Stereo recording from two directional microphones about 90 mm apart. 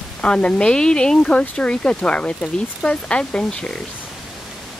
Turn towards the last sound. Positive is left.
turn(degrees=10)  # may be behind; listen again after turning